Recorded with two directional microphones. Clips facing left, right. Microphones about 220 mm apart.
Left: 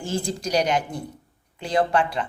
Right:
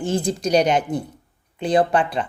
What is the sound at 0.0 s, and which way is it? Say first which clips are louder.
A woman's voice: right 5 dB; 20° right (ahead or behind).